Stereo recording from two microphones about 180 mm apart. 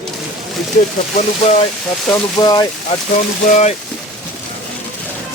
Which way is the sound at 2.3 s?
25° left (ahead or behind).